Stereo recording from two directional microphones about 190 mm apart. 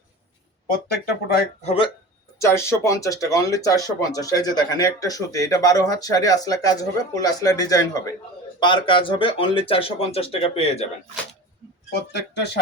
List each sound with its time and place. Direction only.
1.6 s speech: 30° left (ahead or behind)
2.4 s speech: 15° left (ahead or behind); by 10.8 s 30° left (ahead or behind)
11.9 s speech: 60° left (ahead or behind)